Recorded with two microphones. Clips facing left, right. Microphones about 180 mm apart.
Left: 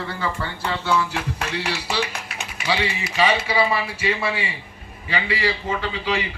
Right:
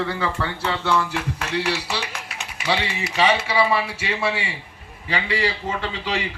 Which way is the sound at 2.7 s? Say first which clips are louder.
Even; 70° right (ahead or behind).